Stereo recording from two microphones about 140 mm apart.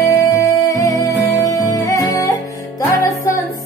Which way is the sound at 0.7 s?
25° left (ahead or behind).